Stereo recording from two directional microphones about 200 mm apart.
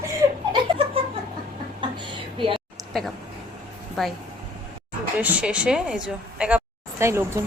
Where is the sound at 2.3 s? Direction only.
25° right (ahead or behind).